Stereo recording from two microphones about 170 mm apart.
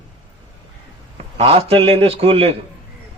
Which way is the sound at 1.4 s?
35° right (ahead or behind).